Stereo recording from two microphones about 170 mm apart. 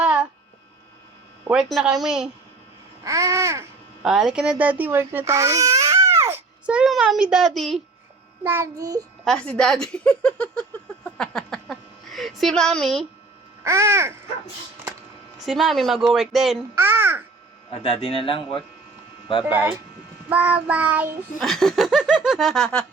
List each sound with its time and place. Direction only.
0.0 s a sound: 5° right (ahead or behind)
1.5 s speech: 5° right (ahead or behind)
3.0 s babbling: 20° right (ahead or behind)
4.0 s speech: 5° right (ahead or behind)
8.4 s babbling: 15° right (ahead or behind)
9.2 s a sound: 5° left (ahead or behind)
13.7 s child singing: 15° right (ahead or behind)
15.4 s speech: centre (ahead or behind)
16.7 s babbling: 15° right (ahead or behind)
17.7 s a man's voice: 35° left (ahead or behind)
19.5 s child singing: 10° right (ahead or behind)
21.3 s speech: centre (ahead or behind)